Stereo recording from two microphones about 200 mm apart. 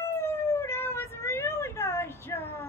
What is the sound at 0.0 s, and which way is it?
Vehicle, 10° left (ahead or behind).